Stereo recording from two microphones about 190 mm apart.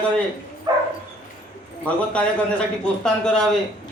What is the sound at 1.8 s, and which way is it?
A man's voice, 5° left (ahead or behind).